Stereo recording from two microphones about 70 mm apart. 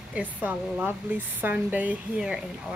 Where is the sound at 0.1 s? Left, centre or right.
Right.